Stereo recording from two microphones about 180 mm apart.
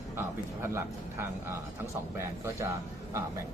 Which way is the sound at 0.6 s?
15° right (ahead or behind).